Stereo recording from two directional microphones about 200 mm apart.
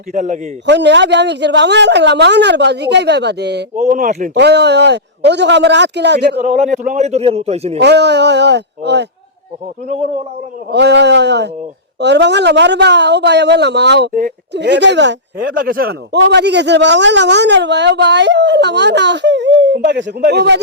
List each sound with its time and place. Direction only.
0.1 s a man's voice: 40° right (ahead or behind)
0.6 s a man's voice: 60° right (ahead or behind)
3.8 s a man's voice: 40° right (ahead or behind)
4.4 s a man's voice: 60° right (ahead or behind)
6.4 s a man's voice: 35° right (ahead or behind)
7.8 s a man's voice: 60° right (ahead or behind)
10.7 s a man's voice: 55° right (ahead or behind)
15.5 s a man's voice: 45° right (ahead or behind)